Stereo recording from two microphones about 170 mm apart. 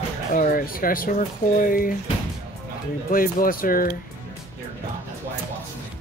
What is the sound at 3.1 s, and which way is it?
Speech, 55° left (ahead or behind).